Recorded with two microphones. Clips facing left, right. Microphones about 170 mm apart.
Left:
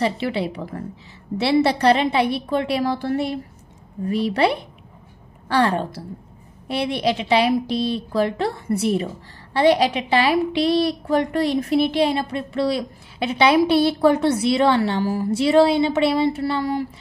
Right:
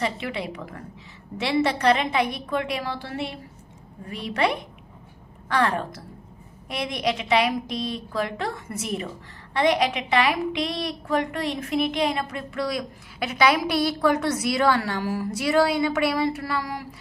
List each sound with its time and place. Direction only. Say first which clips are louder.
0.0 s a woman's voice: left 6 dB; 30° left (ahead or behind)